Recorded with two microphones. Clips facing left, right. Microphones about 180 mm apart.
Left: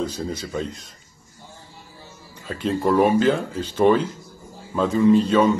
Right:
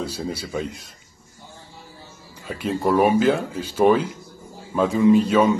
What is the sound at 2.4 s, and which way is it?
A man's voice, 10° right (ahead or behind).